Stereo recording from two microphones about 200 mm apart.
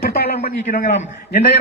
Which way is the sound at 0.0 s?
50° left (ahead or behind).